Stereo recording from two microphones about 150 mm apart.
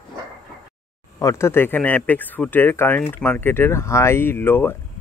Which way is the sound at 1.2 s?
15° left (ahead or behind).